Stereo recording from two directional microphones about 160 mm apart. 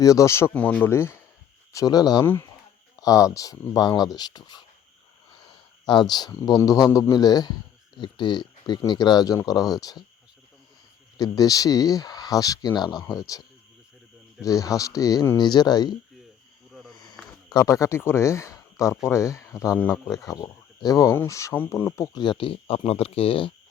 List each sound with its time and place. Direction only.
0.0 s speech: 20° left (ahead or behind)
2.2 s speech: 15° left (ahead or behind)
11.2 s speech: 20° left (ahead or behind)
16.9 s a sound: 25° left (ahead or behind)
17.5 s speech: 20° left (ahead or behind)